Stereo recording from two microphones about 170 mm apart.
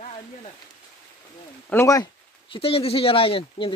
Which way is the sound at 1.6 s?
15° left (ahead or behind).